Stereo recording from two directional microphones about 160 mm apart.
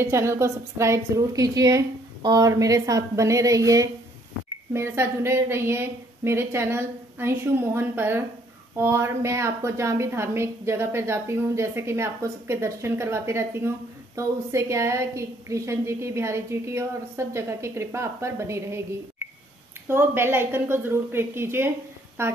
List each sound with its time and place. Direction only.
0.0 s a woman's voice: 15° right (ahead or behind)
19.9 s a woman's voice: 15° right (ahead or behind)